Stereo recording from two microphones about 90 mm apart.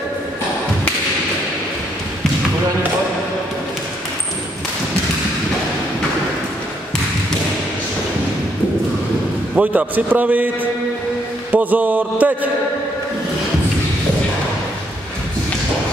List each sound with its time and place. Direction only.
9.6 s a man's voice: 15° right (ahead or behind)